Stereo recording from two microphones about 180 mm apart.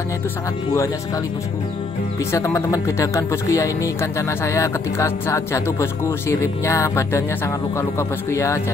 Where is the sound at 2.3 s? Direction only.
15° left (ahead or behind).